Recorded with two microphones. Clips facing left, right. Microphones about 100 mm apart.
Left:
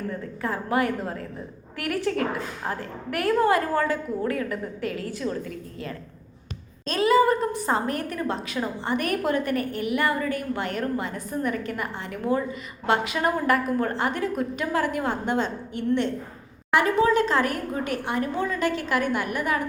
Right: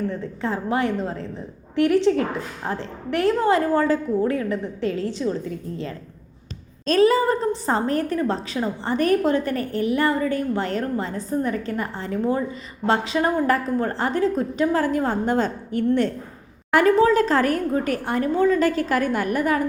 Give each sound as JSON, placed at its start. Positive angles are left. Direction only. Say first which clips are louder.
{"t": 0.1, "sound": "a woman's voice", "louder": "right 3 dB", "side_deg": -25}
{"t": 6.8, "sound": "a woman's voice", "louder": "right 2 dB", "side_deg": -40}